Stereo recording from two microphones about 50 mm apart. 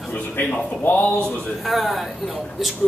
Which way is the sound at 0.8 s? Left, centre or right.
Left.